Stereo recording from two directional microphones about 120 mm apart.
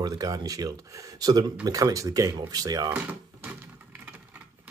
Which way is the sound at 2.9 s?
15° right (ahead or behind).